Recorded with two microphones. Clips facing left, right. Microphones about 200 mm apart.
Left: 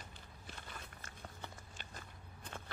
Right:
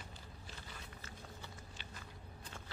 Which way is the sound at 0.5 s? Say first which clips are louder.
Left 1 dB; 55° left (ahead or behind).